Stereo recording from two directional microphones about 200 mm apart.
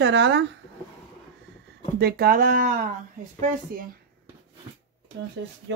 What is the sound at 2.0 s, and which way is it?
Speech, 50° right (ahead or behind).